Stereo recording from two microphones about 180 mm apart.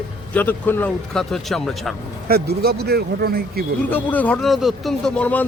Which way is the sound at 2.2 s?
60° right (ahead or behind).